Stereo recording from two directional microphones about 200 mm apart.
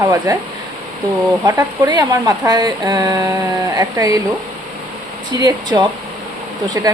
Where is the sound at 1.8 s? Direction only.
20° right (ahead or behind).